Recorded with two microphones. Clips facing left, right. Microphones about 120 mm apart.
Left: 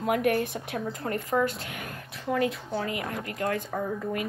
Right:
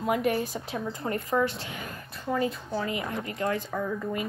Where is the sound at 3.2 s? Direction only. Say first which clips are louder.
Even; 55° left (ahead or behind).